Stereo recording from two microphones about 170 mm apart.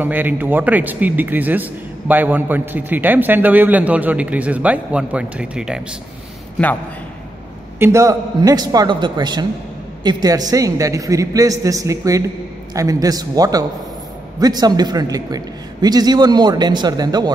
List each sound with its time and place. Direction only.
0.0 s a man's voice: 10° right (ahead or behind)
7.8 s a man's voice: 20° right (ahead or behind)